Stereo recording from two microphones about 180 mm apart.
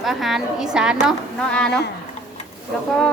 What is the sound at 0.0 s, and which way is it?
A woman's voice, centre (ahead or behind).